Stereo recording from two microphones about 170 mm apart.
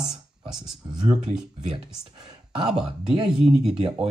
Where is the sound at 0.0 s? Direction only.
5° right (ahead or behind).